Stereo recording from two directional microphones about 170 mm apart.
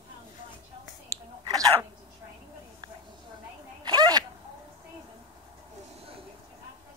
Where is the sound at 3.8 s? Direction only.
25° right (ahead or behind).